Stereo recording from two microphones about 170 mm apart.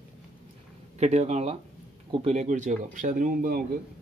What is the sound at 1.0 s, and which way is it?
Speech, 40° right (ahead or behind).